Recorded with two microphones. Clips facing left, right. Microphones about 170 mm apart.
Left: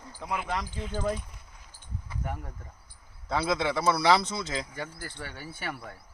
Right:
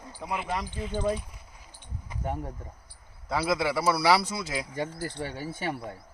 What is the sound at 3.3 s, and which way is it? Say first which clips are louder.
Speech: right 1 dB; centre (ahead or behind).